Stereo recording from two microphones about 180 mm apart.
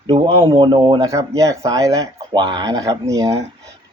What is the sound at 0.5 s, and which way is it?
Speech, 25° right (ahead or behind).